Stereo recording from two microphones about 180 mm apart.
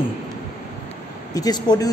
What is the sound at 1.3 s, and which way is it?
Speech, 20° left (ahead or behind).